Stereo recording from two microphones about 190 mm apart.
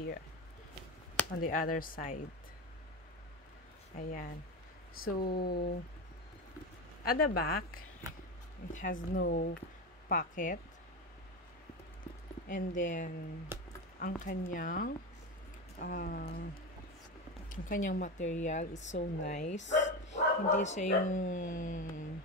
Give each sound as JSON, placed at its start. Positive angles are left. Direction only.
{"t": 1.3, "sound": "speech", "side_deg": 45}
{"t": 3.9, "sound": "speech", "side_deg": 45}
{"t": 7.1, "sound": "speech", "side_deg": 50}
{"t": 9.2, "sound": "speech", "side_deg": 55}
{"t": 10.0, "sound": "speech", "side_deg": 45}
{"t": 12.4, "sound": "speech", "side_deg": 45}
{"t": 13.5, "sound": "a sound", "side_deg": -10}
{"t": 13.9, "sound": "speech", "side_deg": 50}
{"t": 17.5, "sound": "speech", "side_deg": 45}